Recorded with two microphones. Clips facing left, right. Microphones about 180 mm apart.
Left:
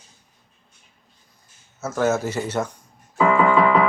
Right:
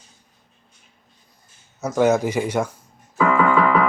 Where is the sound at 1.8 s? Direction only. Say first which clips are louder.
Right 4 dB; 15° right (ahead or behind).